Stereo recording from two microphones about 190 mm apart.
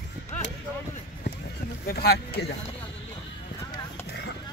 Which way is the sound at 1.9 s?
55° left (ahead or behind).